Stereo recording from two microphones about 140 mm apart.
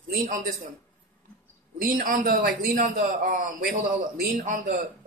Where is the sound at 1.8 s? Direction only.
80° right.